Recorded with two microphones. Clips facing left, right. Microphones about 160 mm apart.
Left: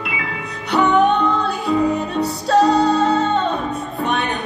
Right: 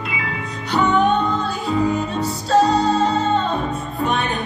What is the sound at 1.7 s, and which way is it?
Music, 65° left (ahead or behind).